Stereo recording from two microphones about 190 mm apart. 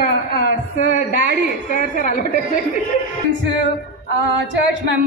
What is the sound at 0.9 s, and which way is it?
A woman's voice, 45° left (ahead or behind).